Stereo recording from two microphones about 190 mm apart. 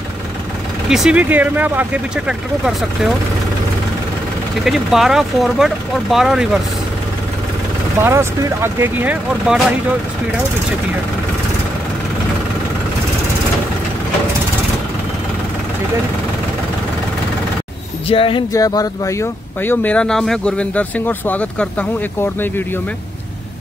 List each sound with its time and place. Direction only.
0.8 s speech: 5° right (ahead or behind)
4.6 s speech: centre (ahead or behind)
8.0 s speech: 15° right (ahead or behind)
18.0 s speech: 30° left (ahead or behind)
18.5 s speech: 15° left (ahead or behind)